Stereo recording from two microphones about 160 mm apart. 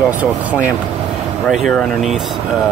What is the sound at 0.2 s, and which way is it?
Speech, 10° right (ahead or behind).